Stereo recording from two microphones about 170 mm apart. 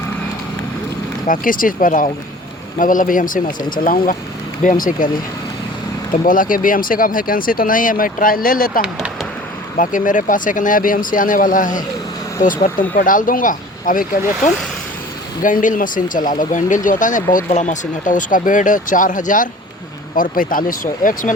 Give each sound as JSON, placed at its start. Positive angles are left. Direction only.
{"t": 1.3, "sound": "speech", "side_deg": 55}
{"t": 6.2, "sound": "speech", "side_deg": 55}
{"t": 8.8, "sound": "speech", "side_deg": -5}
{"t": 9.7, "sound": "speech", "side_deg": 50}